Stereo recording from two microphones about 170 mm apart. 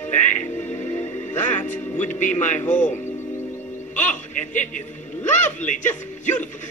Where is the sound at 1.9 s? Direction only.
45° left (ahead or behind).